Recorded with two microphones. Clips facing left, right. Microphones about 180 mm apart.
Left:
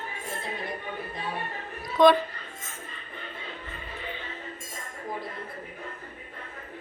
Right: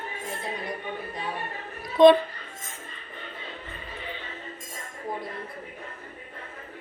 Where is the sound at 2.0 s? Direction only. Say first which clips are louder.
Right 4 dB; 25° right (ahead or behind).